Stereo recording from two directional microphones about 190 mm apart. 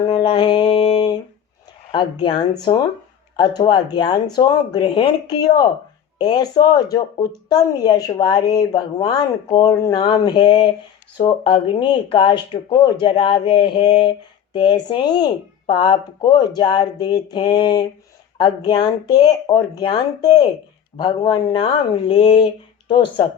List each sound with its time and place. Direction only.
0.0 s mantra: 25° left (ahead or behind)
1.9 s speech: 25° left (ahead or behind)